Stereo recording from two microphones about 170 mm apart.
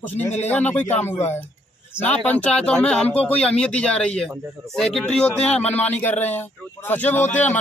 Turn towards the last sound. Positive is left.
turn(degrees=10)  # may be behind; listen again after turning